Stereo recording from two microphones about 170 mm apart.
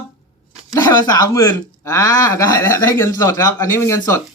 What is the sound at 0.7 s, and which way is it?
Speech, 20° left (ahead or behind).